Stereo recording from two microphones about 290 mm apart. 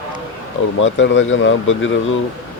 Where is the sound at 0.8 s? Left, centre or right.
Left.